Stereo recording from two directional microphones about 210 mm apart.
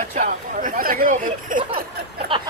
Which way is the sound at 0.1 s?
40° right (ahead or behind).